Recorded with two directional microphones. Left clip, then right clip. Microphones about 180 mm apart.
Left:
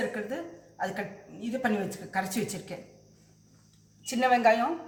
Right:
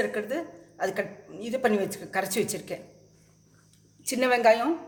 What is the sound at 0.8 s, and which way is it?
Speech, 60° right (ahead or behind).